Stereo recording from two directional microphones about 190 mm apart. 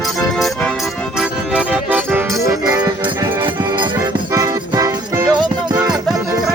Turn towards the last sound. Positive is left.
turn(degrees=-20)  # may be behind; listen again after turning